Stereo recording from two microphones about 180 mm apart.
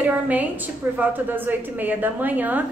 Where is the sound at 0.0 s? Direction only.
10° right (ahead or behind).